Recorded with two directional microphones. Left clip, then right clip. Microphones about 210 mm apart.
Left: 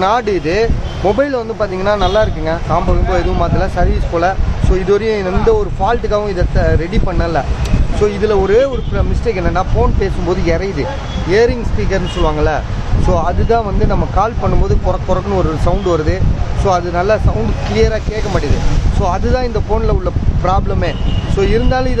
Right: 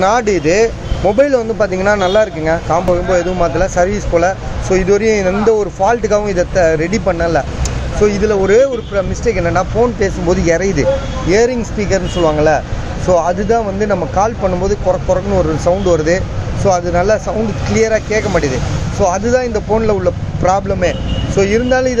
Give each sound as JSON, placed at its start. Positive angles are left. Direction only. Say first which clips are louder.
{"t": 0.0, "sound": "speech", "louder": "right 2 dB", "side_deg": -5}